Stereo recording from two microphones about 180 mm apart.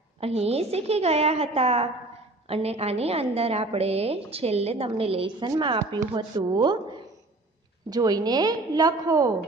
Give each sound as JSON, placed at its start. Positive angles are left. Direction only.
{"t": 0.2, "sound": "a woman's voice", "side_deg": -35}
{"t": 7.9, "sound": "a woman's voice", "side_deg": -20}